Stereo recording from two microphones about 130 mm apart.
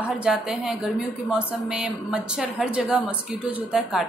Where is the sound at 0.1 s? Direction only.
10° right (ahead or behind).